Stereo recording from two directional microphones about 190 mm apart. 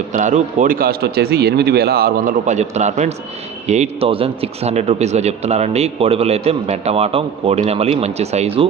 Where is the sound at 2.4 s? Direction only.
40° right (ahead or behind).